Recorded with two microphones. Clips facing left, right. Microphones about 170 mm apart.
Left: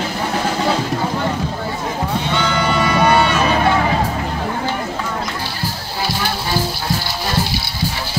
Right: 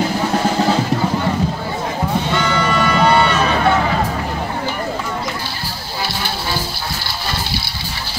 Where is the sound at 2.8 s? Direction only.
20° left (ahead or behind).